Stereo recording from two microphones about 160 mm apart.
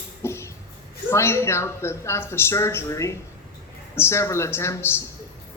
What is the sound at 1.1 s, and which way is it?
A woman's voice, 15° left (ahead or behind).